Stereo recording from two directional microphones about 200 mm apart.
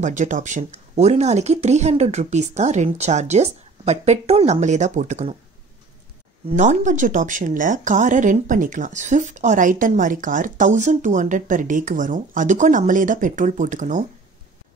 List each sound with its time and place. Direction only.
0.0 s speech: 40° right (ahead or behind)
6.5 s speech: 35° right (ahead or behind)